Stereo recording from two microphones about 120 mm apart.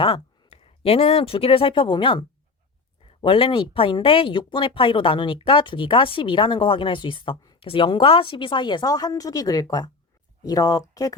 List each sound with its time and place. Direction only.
0.0 s speech: 50° left (ahead or behind); by 11.1 s 30° left (ahead or behind)